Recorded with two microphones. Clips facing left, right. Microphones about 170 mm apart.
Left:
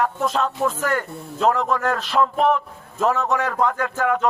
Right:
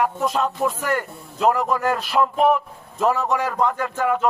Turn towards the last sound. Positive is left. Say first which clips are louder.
# even
turn(degrees=-5)  # may be behind; listen again after turning